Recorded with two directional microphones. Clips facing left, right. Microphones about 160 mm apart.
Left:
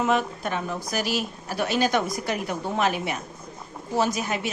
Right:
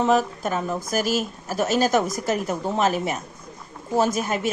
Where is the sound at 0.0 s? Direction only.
35° right (ahead or behind).